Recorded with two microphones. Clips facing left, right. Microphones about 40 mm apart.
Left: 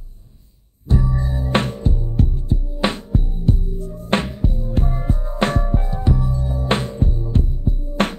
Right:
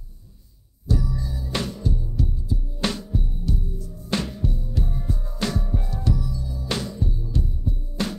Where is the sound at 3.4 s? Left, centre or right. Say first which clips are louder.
Left 7 dB; left.